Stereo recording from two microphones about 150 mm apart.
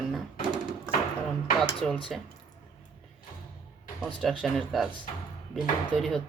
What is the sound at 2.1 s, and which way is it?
Speech, centre (ahead or behind).